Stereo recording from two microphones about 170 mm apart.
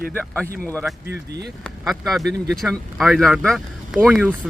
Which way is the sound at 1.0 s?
75° right (ahead or behind).